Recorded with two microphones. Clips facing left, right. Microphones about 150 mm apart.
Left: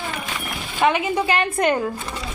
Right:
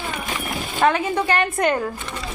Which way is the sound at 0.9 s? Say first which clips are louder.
Even; 10° left (ahead or behind).